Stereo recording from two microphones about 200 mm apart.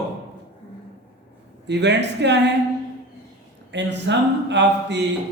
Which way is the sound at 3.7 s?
60° right (ahead or behind).